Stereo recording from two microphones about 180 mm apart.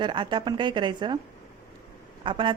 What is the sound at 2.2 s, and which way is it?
Speech, 25° right (ahead or behind).